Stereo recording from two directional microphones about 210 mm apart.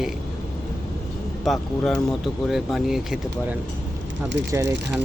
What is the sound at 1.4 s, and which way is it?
Speech, centre (ahead or behind).